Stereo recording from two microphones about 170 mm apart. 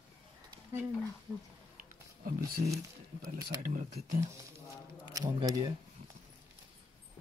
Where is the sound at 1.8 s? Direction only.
60° right (ahead or behind).